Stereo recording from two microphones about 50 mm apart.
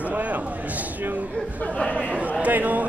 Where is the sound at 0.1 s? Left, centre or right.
Right.